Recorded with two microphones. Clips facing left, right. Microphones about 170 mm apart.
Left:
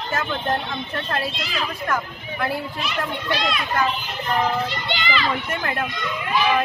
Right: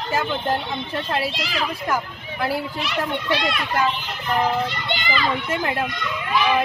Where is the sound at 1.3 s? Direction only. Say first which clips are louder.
Right 2 dB; 75° right (ahead or behind).